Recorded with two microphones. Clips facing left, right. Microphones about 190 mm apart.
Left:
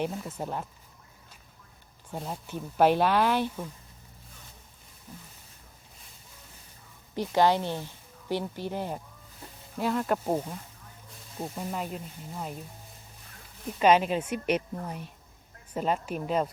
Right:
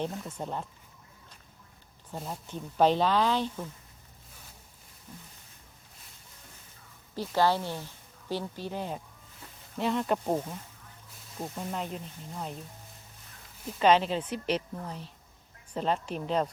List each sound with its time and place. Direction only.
0.0 s speech: 5° left (ahead or behind)
2.2 s speech: 5° left (ahead or behind)
7.2 s speech: 15° left (ahead or behind)
13.7 s speech: 10° left (ahead or behind)